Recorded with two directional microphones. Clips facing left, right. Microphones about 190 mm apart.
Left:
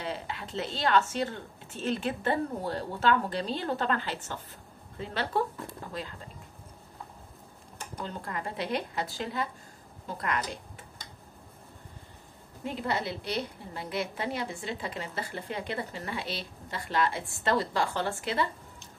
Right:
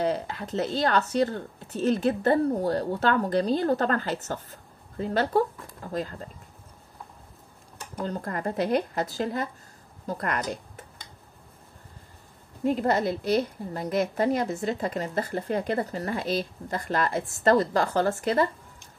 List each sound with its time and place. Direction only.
0.0 s speech: 40° right (ahead or behind)
8.0 s a woman's voice: 45° right (ahead or behind)
12.6 s a woman's voice: 45° right (ahead or behind)